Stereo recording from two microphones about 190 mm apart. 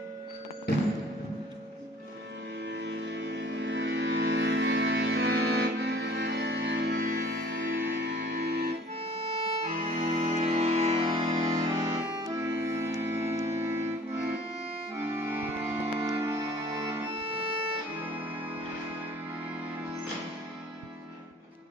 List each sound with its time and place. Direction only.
2.6 s music: 65° right (ahead or behind)
7.0 s music: 45° right (ahead or behind)
9.0 s music: 30° right (ahead or behind)
11.0 s music: 25° right (ahead or behind)